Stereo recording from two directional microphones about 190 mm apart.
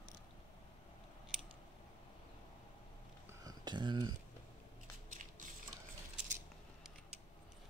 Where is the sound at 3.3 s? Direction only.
20° right (ahead or behind).